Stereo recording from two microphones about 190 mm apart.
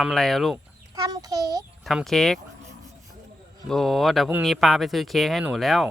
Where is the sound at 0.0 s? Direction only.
Centre (ahead or behind).